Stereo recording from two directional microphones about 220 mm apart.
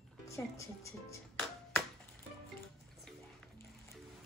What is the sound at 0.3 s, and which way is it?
Speech, 15° left (ahead or behind).